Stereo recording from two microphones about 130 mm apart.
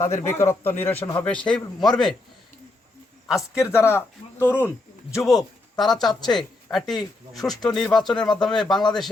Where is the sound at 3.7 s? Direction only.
20° left (ahead or behind).